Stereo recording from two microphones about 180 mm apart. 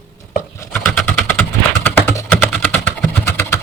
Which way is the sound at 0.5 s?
15° left (ahead or behind).